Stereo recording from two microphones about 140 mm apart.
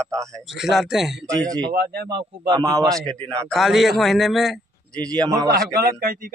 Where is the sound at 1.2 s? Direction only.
25° right (ahead or behind).